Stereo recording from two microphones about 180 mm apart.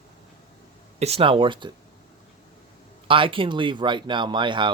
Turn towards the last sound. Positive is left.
turn(degrees=-25)  # may be behind; listen again after turning